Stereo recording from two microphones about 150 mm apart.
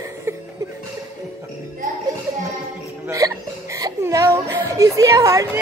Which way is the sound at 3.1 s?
20° right (ahead or behind).